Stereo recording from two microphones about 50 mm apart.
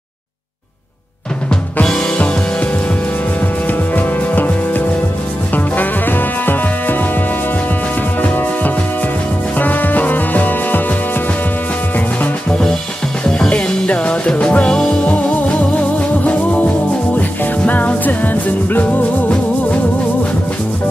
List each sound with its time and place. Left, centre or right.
1.9 s music: centre
2.1 s music: left
8.2 s music: left
13.2 s music: left